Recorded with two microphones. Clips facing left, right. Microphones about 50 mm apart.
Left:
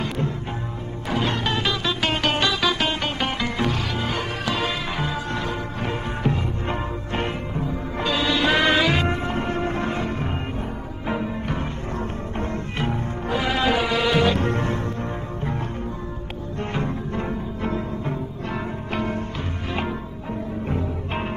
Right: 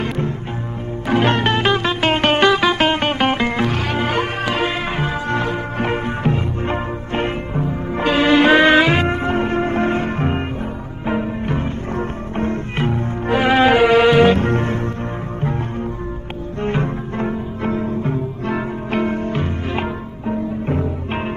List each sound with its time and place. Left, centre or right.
1.0 s music: right
4.5 s music: right
6.2 s music: right
7.6 s music: right
11.1 s music: right
12.0 s music: right
16.6 s music: right
20.6 s music: right